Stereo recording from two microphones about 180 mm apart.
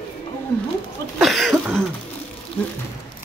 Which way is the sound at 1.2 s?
Centre (ahead or behind).